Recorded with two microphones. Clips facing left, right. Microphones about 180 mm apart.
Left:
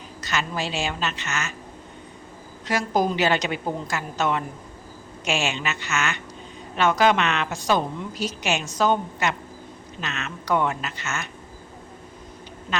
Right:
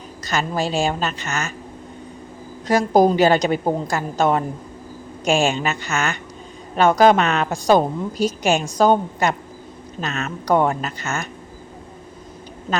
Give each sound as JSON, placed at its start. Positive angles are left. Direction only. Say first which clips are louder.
{"t": 0.3, "sound": "a woman's voice", "louder": "right 5 dB", "side_deg": -40}
{"t": 2.6, "sound": "a woman's voice", "louder": "right 8 dB", "side_deg": -40}